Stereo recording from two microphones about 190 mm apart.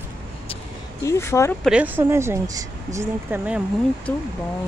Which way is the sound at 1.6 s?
5° right (ahead or behind).